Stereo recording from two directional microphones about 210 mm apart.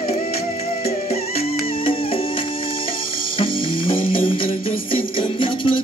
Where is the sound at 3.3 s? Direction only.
25° left (ahead or behind).